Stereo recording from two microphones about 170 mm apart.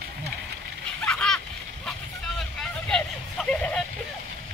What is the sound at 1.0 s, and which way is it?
Splash, 5° left (ahead or behind).